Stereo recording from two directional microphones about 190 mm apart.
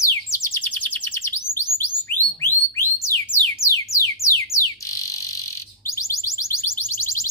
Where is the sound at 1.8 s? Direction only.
10° left (ahead or behind).